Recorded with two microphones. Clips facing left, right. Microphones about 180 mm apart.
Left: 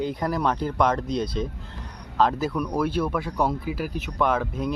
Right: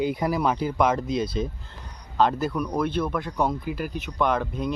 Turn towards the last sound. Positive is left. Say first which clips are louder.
# even
turn(degrees=5)  # may be behind; listen again after turning